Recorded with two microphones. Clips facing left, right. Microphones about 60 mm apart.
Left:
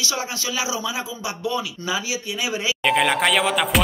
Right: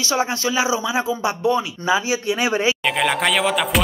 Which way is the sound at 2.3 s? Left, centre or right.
Right.